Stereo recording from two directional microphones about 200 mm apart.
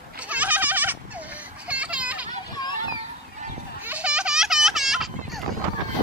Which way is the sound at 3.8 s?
5° right (ahead or behind).